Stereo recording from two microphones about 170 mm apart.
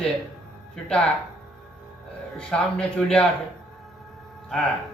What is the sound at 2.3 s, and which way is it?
Speech, 5° left (ahead or behind).